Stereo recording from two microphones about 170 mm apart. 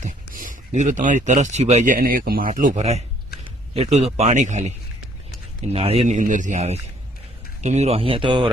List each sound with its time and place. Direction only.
0.0 s speech: 50° right (ahead or behind)
5.7 s speech: 35° right (ahead or behind)